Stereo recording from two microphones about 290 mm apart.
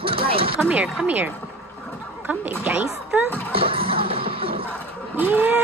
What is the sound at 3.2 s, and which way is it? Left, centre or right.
Speech, centre.